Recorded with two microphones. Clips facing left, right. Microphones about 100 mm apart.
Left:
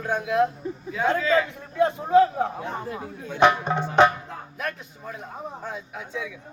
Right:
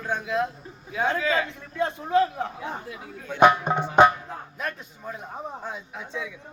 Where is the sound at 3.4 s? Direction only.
15° right (ahead or behind); by 6.3 s centre (ahead or behind).